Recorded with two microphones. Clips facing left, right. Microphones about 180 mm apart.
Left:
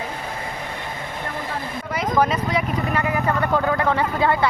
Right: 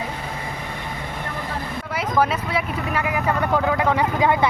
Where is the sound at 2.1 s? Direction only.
10° right (ahead or behind).